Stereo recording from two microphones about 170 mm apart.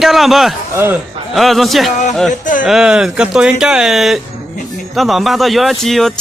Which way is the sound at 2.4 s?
50° left (ahead or behind).